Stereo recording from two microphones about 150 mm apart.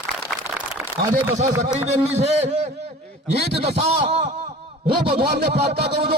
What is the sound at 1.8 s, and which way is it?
A man's voice, 45° right (ahead or behind).